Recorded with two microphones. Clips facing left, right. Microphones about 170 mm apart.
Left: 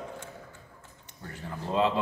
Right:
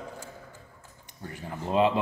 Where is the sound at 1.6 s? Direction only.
15° right (ahead or behind).